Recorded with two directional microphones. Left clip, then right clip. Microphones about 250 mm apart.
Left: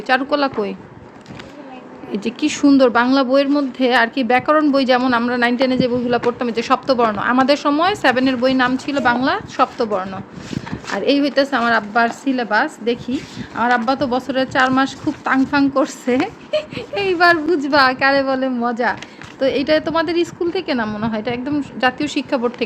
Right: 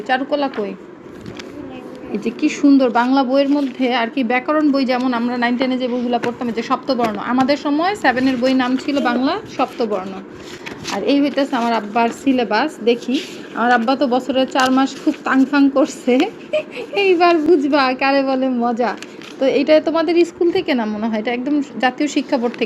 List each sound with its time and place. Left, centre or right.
0.1 s speech: left
2.1 s speech: left
11.0 s speech: left
16.0 s speech: left
17.0 s a woman's voice: left